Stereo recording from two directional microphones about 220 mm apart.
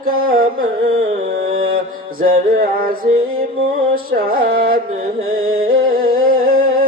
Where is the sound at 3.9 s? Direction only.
40° right (ahead or behind).